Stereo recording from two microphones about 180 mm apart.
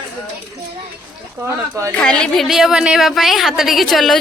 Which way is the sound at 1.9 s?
5° left (ahead or behind).